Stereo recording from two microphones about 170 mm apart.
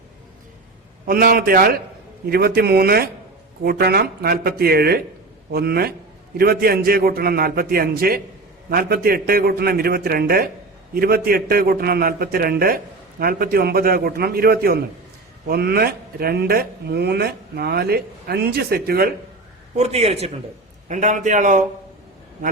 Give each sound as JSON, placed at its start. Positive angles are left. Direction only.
{"t": 1.0, "sound": "a man's voice", "side_deg": -60}
{"t": 19.7, "sound": "a man's voice", "side_deg": -40}